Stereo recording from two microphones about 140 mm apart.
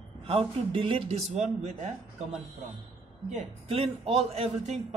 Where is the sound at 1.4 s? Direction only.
55° right (ahead or behind).